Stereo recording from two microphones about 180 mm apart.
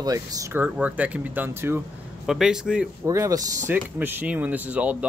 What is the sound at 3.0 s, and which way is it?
Speech, 15° right (ahead or behind).